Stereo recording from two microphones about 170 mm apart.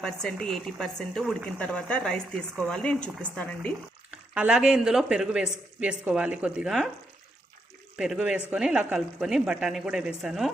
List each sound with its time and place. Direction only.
0.0 s speech: 5° left (ahead or behind)
4.1 s speech: 10° right (ahead or behind)
7.9 s speech: 5° right (ahead or behind)